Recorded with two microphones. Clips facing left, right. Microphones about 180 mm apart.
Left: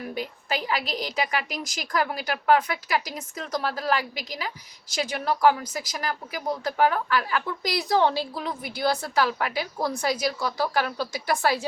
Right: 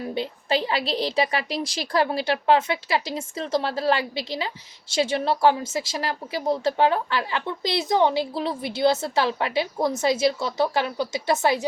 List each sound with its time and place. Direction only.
0.0 s a woman's voice: 25° right (ahead or behind)